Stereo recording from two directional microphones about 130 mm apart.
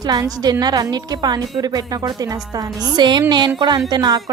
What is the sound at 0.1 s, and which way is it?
A woman's voice, 30° right (ahead or behind).